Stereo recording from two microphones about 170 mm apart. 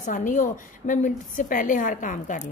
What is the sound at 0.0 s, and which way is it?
Speech, 50° left (ahead or behind).